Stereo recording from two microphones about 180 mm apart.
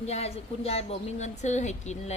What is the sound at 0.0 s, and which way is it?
Speech, 35° left (ahead or behind).